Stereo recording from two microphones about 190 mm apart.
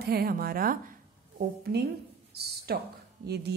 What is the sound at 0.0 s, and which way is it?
A woman's voice, 55° right (ahead or behind).